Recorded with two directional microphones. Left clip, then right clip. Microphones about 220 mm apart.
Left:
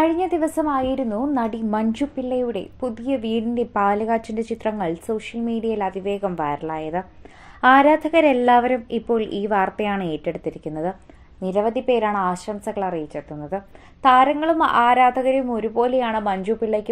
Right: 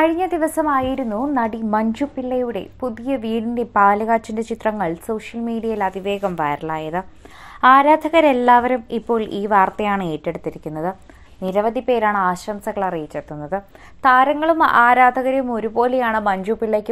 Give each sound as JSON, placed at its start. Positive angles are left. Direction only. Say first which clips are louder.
{"t": 0.0, "sound": "a woman's voice", "louder": "right 2 dB", "side_deg": -15}